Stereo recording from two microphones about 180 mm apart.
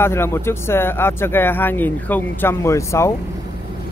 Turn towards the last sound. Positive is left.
turn(degrees=15)  # may be behind; listen again after turning